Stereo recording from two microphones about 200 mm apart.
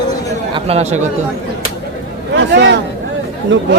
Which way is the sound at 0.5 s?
30° right (ahead or behind).